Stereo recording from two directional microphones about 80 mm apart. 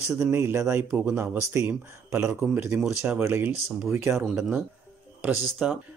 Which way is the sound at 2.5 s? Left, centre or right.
Centre.